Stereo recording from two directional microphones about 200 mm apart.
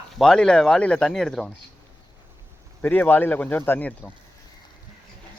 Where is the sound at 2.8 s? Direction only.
10° left (ahead or behind).